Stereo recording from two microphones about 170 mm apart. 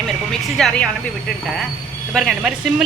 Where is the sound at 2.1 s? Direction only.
Centre (ahead or behind).